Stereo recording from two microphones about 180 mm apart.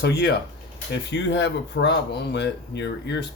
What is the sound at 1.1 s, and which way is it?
Speech, 90° left.